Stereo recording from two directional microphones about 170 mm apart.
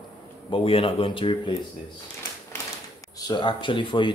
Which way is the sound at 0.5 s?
30° left (ahead or behind).